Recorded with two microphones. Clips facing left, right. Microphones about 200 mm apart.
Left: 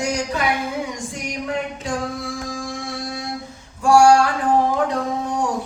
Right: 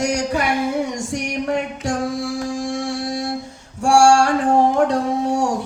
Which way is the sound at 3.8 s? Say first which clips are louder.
Even; 80° right.